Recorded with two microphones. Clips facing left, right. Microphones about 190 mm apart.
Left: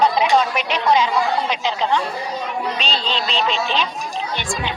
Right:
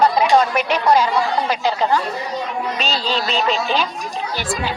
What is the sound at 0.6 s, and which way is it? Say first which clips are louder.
Speech: right 3 dB; 45° right (ahead or behind).